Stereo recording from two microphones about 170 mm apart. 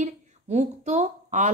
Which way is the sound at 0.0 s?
40° right (ahead or behind).